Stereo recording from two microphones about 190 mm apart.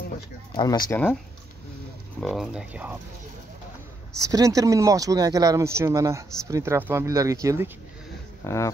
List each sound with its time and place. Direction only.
0.6 s speech: 20° left (ahead or behind)
2.1 s speech: centre (ahead or behind)
4.3 s speech: 15° right (ahead or behind)
8.5 s dog: 15° left (ahead or behind)